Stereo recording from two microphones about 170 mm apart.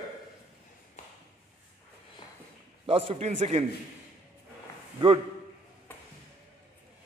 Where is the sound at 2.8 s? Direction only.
35° right (ahead or behind).